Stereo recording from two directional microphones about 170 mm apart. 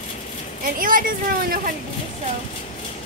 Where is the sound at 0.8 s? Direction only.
55° right (ahead or behind).